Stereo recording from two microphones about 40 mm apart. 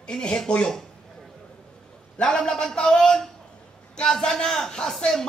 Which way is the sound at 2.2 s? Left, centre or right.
Centre.